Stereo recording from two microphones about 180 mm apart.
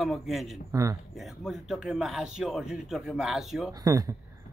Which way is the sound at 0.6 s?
20° right (ahead or behind).